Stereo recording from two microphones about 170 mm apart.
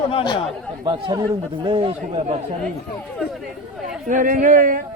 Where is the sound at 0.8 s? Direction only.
25° right (ahead or behind).